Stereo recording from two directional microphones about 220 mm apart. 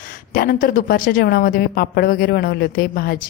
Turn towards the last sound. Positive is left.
turn(degrees=45)  # may be behind; listen again after turning